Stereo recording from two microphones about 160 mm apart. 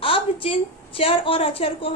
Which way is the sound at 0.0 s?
35° left (ahead or behind).